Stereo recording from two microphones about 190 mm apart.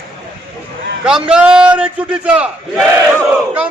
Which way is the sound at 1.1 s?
5° right (ahead or behind).